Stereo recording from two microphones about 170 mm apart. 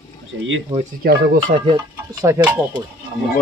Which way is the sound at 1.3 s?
30° right (ahead or behind).